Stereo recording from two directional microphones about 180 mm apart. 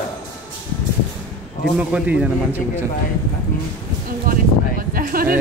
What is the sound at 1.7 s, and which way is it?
Speech, 5° right (ahead or behind).